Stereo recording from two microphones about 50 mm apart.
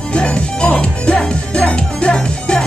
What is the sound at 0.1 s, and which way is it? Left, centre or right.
Music, left.